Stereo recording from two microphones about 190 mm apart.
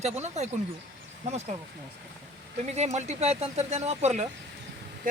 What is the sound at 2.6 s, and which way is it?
Speech, 35° right (ahead or behind).